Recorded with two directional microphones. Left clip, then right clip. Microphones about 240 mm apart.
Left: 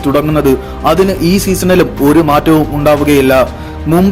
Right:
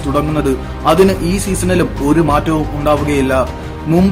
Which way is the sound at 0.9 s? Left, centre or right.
Left.